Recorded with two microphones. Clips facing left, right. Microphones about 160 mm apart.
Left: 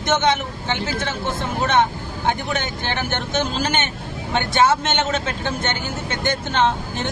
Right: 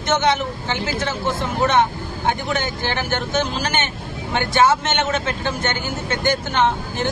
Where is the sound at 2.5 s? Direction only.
20° left (ahead or behind).